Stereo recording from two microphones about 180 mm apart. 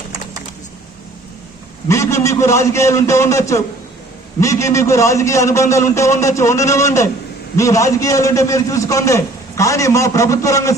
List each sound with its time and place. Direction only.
1.9 s a man's voice: 15° left (ahead or behind)